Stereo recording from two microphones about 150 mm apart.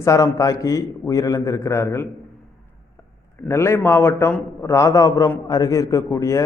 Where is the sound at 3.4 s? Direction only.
20° left (ahead or behind).